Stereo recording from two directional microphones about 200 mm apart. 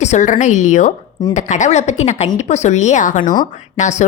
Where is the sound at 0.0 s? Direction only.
35° left (ahead or behind).